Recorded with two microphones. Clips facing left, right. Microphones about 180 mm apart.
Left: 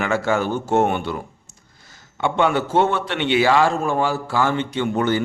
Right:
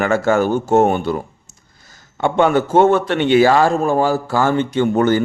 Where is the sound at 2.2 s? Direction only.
45° right (ahead or behind).